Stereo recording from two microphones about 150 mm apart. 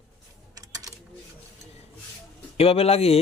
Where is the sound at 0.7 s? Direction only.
25° right (ahead or behind).